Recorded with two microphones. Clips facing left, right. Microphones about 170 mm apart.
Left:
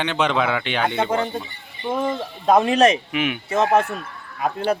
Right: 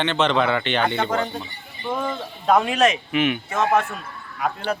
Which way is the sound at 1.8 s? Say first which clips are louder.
Left 3 dB; 20° left (ahead or behind).